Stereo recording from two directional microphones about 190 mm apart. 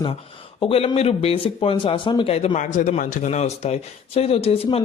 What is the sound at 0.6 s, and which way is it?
Speech, 30° left (ahead or behind).